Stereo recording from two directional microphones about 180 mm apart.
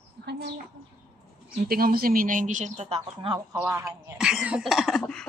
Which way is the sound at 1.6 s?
55° right (ahead or behind).